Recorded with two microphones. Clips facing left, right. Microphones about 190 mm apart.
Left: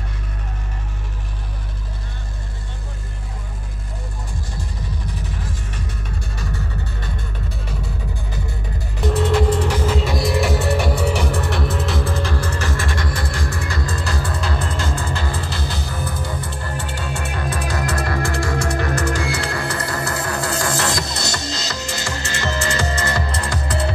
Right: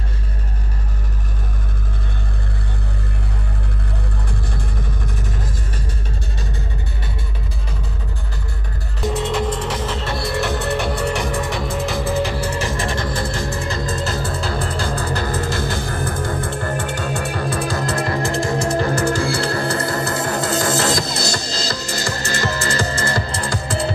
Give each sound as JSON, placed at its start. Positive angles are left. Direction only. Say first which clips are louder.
{"t": 9.0, "sound": "music", "louder": "left 3 dB", "side_deg": 0}
{"t": 12.9, "sound": "music", "louder": "right 3 dB", "side_deg": -25}